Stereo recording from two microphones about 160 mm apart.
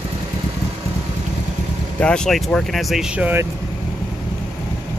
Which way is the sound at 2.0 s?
5° left (ahead or behind).